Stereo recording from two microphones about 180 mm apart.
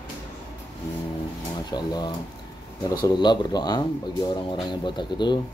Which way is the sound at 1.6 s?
25° left (ahead or behind).